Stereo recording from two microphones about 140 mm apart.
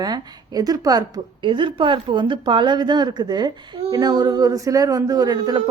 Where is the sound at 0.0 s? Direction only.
30° right (ahead or behind).